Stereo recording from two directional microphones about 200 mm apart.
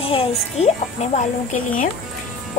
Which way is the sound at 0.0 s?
25° left (ahead or behind).